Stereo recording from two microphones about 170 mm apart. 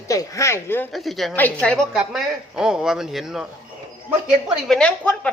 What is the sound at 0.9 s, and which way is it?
Speech, centre (ahead or behind).